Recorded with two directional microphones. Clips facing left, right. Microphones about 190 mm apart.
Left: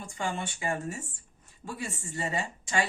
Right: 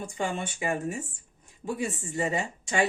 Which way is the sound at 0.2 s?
20° right (ahead or behind).